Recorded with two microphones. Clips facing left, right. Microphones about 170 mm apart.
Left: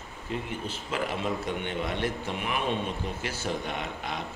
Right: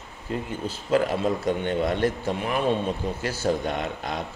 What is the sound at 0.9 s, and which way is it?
Speech, 40° right (ahead or behind).